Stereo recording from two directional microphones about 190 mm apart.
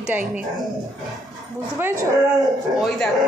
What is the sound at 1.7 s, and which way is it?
Speech, 10° right (ahead or behind).